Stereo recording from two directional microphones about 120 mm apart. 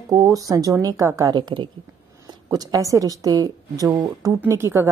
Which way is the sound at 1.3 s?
40° right (ahead or behind).